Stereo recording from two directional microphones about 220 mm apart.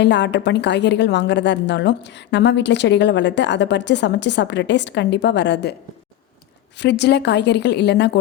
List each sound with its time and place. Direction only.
0.0 s a woman's voice: 50° left (ahead or behind)
6.7 s a woman's voice: 50° left (ahead or behind)